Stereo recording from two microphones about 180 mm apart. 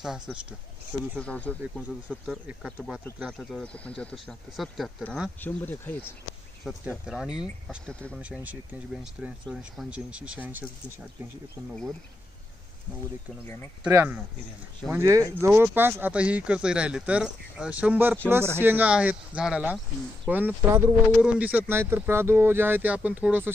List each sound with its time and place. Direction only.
0.0 s speech: 5° right (ahead or behind)
2.0 s speech: 5° right (ahead or behind); by 6.1 s 10° left (ahead or behind)
6.6 s speech: centre (ahead or behind)
8.2 s speech: 10° right (ahead or behind)
13.8 s speech: 10° right (ahead or behind)